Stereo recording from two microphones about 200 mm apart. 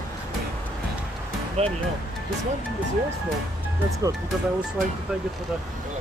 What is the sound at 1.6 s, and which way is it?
Speech, 30° right (ahead or behind).